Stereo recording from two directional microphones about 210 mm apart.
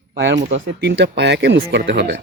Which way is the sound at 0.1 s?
60° right (ahead or behind).